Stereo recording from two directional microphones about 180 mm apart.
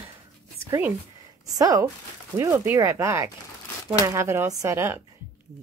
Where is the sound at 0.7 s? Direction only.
10° right (ahead or behind).